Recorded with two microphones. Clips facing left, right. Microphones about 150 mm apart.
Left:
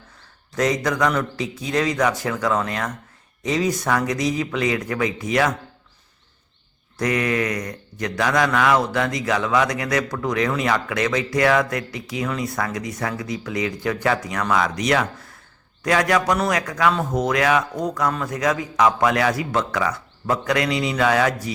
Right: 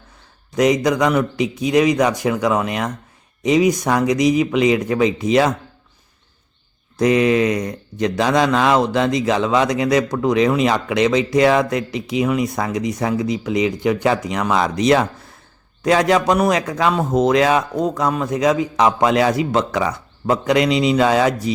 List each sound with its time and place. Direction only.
0.5 s a man's voice: 15° right (ahead or behind)
7.0 s speech: 20° right (ahead or behind)